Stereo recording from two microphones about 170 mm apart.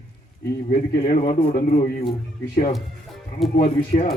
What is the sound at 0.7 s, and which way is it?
A man's voice, 50° left (ahead or behind).